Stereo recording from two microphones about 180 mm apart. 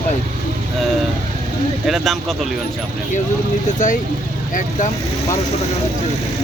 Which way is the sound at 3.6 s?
45° left (ahead or behind).